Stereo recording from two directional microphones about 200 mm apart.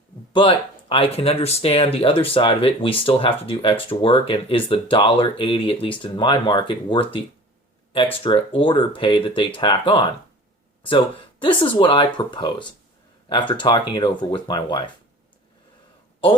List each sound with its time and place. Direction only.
0.3 s speech: 25° left (ahead or behind)
8.2 s speech: 25° left (ahead or behind)